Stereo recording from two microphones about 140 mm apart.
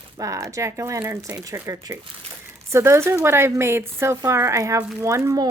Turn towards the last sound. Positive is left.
turn(degrees=-20)  # may be behind; listen again after turning